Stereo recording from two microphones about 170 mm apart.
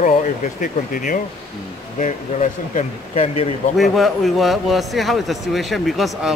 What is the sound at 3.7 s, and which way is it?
A man's voice, centre (ahead or behind).